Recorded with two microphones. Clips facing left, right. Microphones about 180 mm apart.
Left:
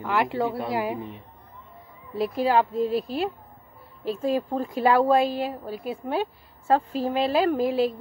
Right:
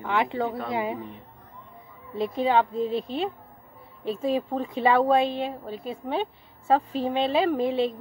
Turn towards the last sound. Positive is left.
turn(degrees=5)  # may be behind; listen again after turning